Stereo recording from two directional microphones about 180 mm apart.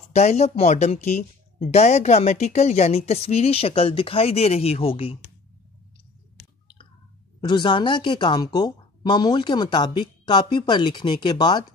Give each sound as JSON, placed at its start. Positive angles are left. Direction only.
{"t": 0.1, "sound": "speech", "side_deg": 35}
{"t": 7.3, "sound": "speech", "side_deg": 25}